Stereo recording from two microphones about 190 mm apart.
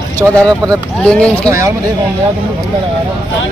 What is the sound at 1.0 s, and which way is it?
Speech, 5° left (ahead or behind).